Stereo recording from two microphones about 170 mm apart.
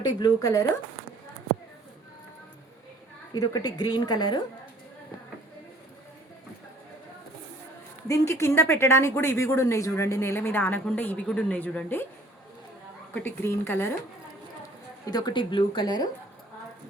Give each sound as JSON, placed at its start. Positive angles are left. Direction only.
{"t": 0.0, "sound": "speech", "side_deg": 20}
{"t": 3.3, "sound": "speech", "side_deg": 25}
{"t": 8.0, "sound": "speech", "side_deg": 20}
{"t": 13.1, "sound": "speech", "side_deg": 15}
{"t": 15.0, "sound": "speech", "side_deg": 25}